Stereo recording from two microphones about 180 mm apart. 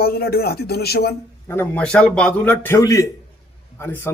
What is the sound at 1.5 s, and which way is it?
Speech, 10° left (ahead or behind).